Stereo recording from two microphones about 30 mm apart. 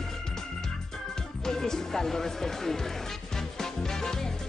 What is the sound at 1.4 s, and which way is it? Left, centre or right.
Speech, centre.